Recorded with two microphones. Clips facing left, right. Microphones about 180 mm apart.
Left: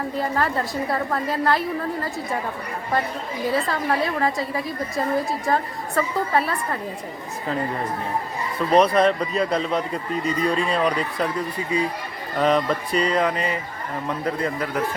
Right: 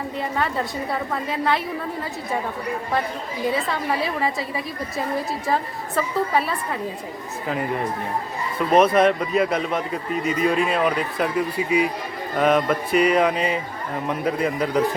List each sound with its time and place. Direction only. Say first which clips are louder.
0.2 s a woman's voice: left 1 dB; centre (ahead or behind)
3.5 s a woman's voice: left 4 dB; centre (ahead or behind)
8.5 s speech: right 1 dB; centre (ahead or behind)